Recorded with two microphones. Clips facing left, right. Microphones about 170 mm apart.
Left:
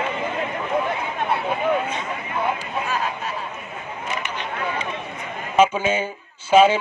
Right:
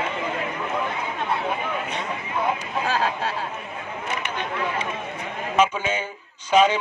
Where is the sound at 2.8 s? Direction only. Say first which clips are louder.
Right 4 dB; 80° right.